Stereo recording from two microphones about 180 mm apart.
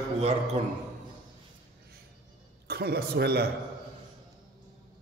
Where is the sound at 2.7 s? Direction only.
60° right (ahead or behind).